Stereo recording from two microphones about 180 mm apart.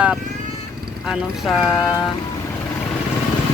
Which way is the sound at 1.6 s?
15° left (ahead or behind).